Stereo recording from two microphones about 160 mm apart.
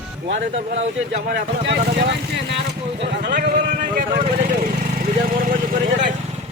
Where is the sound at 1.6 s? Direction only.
90° right.